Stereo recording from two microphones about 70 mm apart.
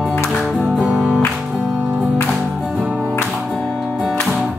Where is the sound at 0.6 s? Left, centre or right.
Centre.